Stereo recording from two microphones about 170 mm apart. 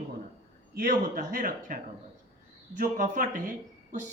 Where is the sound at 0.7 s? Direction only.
55° right (ahead or behind).